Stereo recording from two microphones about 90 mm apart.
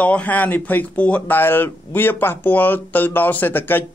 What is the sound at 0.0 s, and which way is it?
Speech, 15° left (ahead or behind).